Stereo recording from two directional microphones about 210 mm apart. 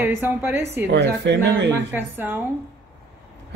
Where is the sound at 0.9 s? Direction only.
55° right (ahead or behind).